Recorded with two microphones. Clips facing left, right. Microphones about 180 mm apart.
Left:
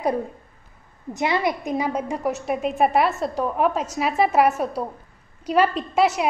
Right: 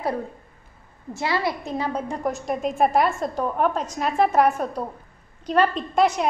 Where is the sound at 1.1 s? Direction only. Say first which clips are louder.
Left 2 dB; 20° left (ahead or behind).